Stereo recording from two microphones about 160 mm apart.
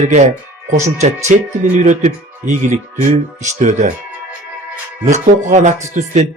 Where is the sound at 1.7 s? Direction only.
50° right (ahead or behind).